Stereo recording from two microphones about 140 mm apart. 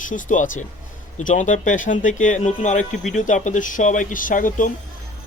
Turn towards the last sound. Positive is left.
turn(degrees=70)  # may be behind; listen again after turning